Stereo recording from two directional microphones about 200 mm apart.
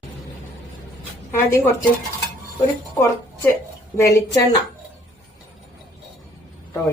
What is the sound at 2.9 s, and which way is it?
A woman's voice, 15° left (ahead or behind).